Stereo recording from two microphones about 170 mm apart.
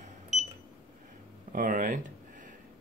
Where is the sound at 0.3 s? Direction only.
45° right (ahead or behind).